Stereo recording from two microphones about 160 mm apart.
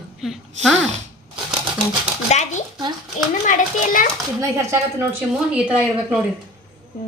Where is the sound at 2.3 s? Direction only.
45° left (ahead or behind).